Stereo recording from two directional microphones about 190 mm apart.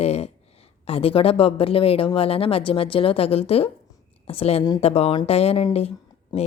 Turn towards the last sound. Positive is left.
turn(degrees=30)  # may be behind; listen again after turning